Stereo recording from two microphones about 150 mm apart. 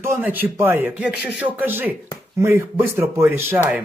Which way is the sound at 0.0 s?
15° right (ahead or behind).